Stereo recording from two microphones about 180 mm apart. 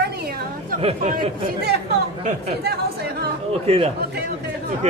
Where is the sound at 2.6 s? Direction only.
60° right (ahead or behind).